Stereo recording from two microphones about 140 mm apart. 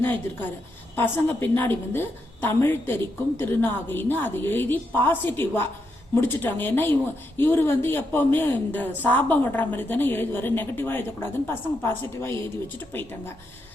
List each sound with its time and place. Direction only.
0.0 s speech: 15° left (ahead or behind)